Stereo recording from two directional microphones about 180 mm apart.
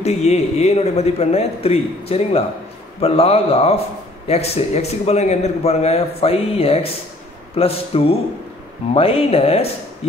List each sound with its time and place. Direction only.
0.0 s a man's voice: 35° left (ahead or behind)